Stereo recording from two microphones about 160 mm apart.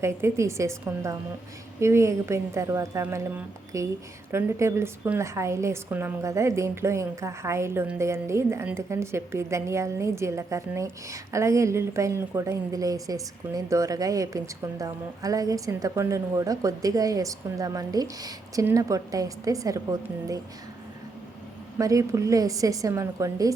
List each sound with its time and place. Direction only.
0.0 s a woman's voice: 15° right (ahead or behind)
21.8 s a woman's voice: 20° right (ahead or behind)